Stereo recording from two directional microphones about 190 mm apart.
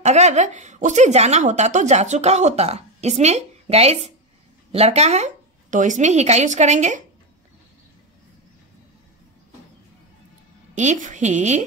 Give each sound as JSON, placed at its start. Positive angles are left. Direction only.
{"t": 0.0, "sound": "a woman's voice", "side_deg": -35}
{"t": 10.7, "sound": "a woman's voice", "side_deg": -40}